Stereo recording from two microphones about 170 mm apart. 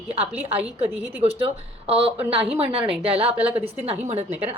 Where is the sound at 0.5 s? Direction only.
10° right (ahead or behind).